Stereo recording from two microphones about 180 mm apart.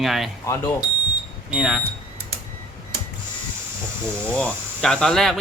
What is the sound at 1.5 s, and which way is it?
Speech, 5° right (ahead or behind).